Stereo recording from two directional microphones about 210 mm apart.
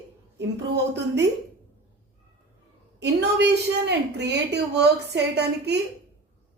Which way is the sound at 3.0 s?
55° right (ahead or behind).